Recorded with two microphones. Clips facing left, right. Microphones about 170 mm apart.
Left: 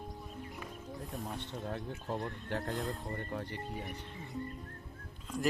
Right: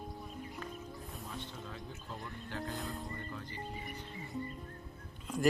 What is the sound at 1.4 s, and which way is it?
Speech, 60° left (ahead or behind).